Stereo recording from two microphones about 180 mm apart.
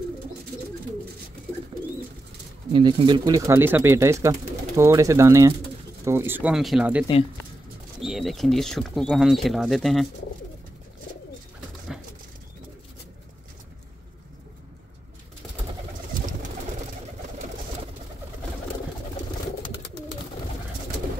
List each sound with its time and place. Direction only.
2.7 s speech: 30° right (ahead or behind); by 10.0 s centre (ahead or behind)